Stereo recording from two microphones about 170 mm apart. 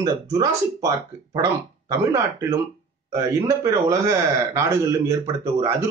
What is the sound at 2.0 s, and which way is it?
A man's voice, 20° right (ahead or behind).